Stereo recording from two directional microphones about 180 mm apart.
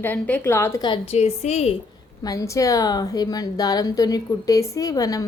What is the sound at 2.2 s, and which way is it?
A woman's voice, 20° left (ahead or behind).